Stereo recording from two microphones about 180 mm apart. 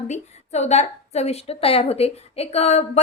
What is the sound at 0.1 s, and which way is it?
A woman's voice, 40° left (ahead or behind).